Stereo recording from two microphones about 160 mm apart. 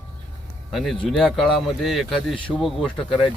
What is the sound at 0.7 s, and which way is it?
Speech, centre (ahead or behind).